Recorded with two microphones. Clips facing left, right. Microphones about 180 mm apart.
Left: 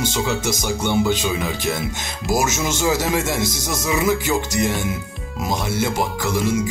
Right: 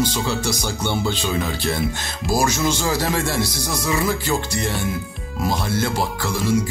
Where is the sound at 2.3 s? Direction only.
20° left (ahead or behind).